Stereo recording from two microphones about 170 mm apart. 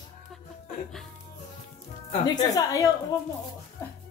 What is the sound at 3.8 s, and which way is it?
Music, 15° left (ahead or behind).